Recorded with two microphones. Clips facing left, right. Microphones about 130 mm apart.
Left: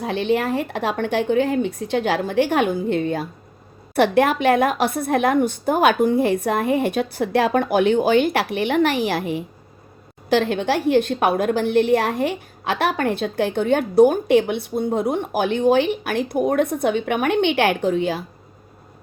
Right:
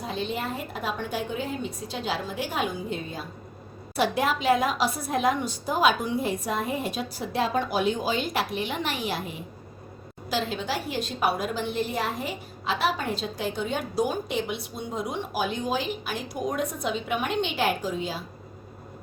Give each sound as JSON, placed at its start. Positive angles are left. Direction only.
{"t": 0.0, "sound": "a woman's voice", "side_deg": 75}